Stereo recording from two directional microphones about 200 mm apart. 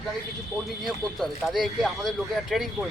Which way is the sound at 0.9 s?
Centre (ahead or behind).